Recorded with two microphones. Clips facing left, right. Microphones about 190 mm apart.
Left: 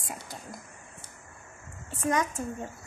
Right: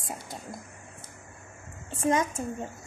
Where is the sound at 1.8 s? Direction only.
25° right (ahead or behind).